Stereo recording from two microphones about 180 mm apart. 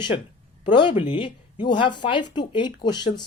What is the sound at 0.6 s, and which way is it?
Speech, 25° left (ahead or behind).